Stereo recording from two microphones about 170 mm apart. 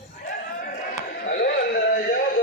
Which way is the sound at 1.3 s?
85° left.